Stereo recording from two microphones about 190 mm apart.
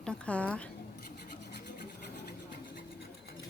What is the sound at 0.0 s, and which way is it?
Speech, 5° left (ahead or behind).